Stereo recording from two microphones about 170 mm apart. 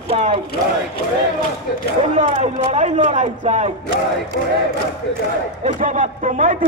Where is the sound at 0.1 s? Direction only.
35° right (ahead or behind).